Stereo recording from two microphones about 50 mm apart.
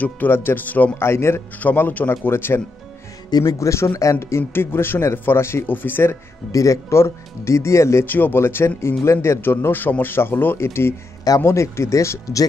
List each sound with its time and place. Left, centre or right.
0.3 s speech: left
0.9 s speech: left
1.6 s speech: left
3.5 s speech: left
4.4 s speech: left
5.7 s speech: left
6.6 s speech: left
8.0 s speech: left
8.4 s speech: left
9.0 s speech: left
9.4 s speech: left
10.6 s speech: left